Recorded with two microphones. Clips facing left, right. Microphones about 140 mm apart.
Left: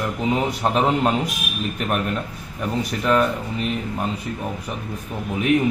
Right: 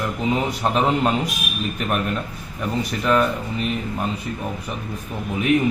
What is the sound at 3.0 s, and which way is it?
Speech, 40° left (ahead or behind).